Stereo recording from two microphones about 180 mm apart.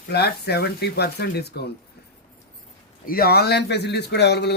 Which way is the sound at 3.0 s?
55° left (ahead or behind).